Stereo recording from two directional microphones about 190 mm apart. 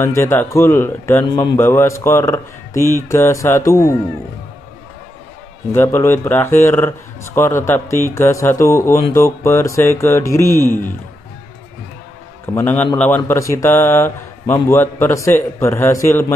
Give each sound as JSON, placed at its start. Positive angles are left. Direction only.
{"t": 0.0, "sound": "speech", "side_deg": 15}
{"t": 5.7, "sound": "speech", "side_deg": 15}
{"t": 12.5, "sound": "speech", "side_deg": 10}